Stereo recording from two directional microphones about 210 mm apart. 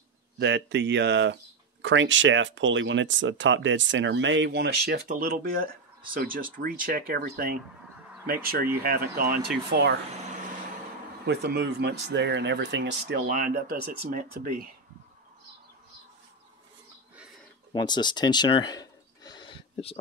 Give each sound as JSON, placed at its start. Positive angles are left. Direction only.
{"t": 0.4, "sound": "speech", "side_deg": -55}
{"t": 11.2, "sound": "speech", "side_deg": -50}
{"t": 13.3, "sound": "speech", "side_deg": -40}
{"t": 17.7, "sound": "a sound", "side_deg": 20}